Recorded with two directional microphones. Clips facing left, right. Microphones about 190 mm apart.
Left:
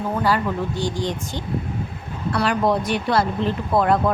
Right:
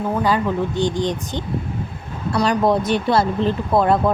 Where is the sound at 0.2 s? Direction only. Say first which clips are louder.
Right 2 dB; 20° right (ahead or behind).